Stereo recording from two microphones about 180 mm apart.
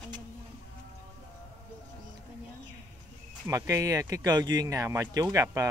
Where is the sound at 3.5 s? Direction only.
20° right (ahead or behind).